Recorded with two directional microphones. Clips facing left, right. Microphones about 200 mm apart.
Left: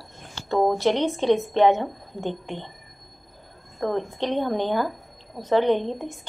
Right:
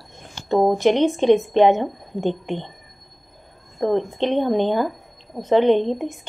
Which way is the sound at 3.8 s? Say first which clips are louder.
Right 5 dB; 20° right (ahead or behind).